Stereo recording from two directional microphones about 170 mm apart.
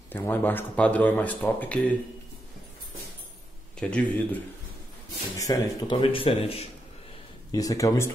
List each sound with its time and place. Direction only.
0.1 s speech: 10° left (ahead or behind)
3.8 s speech: 10° left (ahead or behind)
5.4 s speech: 25° left (ahead or behind)
7.5 s speech: 20° left (ahead or behind)